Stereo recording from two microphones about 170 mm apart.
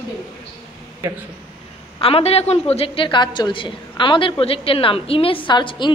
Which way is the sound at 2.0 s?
35° left (ahead or behind).